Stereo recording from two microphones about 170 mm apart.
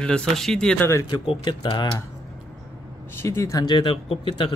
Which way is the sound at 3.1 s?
15° left (ahead or behind).